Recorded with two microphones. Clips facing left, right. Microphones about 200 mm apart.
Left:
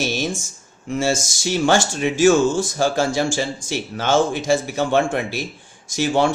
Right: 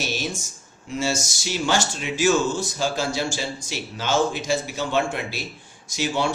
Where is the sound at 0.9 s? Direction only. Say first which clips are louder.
Left 5 dB; 50° left (ahead or behind).